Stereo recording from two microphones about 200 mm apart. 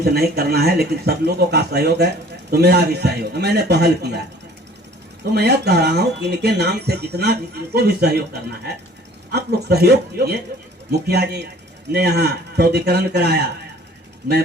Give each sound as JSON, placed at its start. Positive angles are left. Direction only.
{"t": 0.0, "sound": "speech", "side_deg": -50}
{"t": 5.3, "sound": "speech", "side_deg": -55}